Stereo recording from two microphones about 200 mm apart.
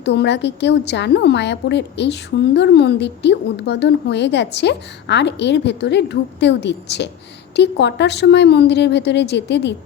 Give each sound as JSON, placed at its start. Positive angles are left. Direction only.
{"t": 0.0, "sound": "a woman's voice", "side_deg": 60}